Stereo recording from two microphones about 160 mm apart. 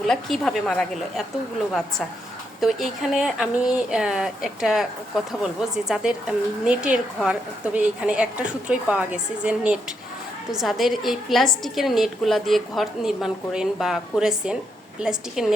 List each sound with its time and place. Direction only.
0.1 s speech: 5° left (ahead or behind)
2.6 s a woman's voice: centre (ahead or behind)